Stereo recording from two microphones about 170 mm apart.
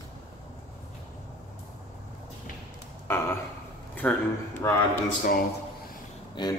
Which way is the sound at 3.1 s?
15° left (ahead or behind).